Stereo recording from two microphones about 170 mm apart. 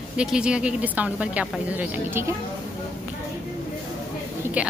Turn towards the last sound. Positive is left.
turn(degrees=-5)  # may be behind; listen again after turning